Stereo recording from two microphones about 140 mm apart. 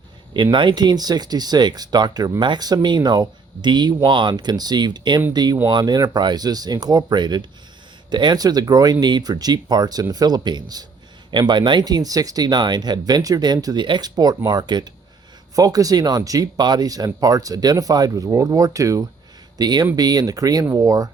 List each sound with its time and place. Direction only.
0.5 s speech: 35° right (ahead or behind)